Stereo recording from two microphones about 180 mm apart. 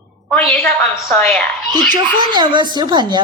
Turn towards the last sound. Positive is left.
turn(degrees=-25)  # may be behind; listen again after turning